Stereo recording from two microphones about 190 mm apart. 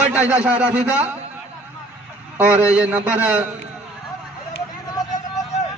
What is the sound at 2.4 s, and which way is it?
A man's voice, 10° right (ahead or behind).